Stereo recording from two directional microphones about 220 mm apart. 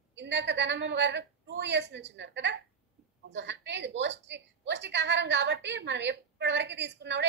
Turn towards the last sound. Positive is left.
turn(degrees=-50)  # may be behind; listen again after turning